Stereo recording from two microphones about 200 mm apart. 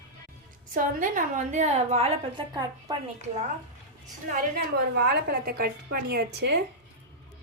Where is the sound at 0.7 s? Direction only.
40° right (ahead or behind).